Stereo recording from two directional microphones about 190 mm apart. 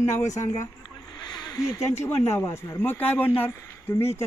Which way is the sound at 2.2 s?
15° left (ahead or behind).